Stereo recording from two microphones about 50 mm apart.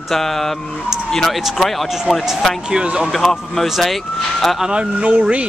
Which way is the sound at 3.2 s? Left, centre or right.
Centre.